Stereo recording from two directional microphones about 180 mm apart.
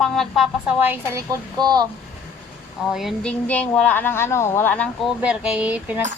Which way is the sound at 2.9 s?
Centre (ahead or behind).